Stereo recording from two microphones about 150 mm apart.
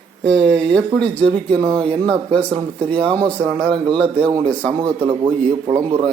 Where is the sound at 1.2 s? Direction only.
35° right (ahead or behind).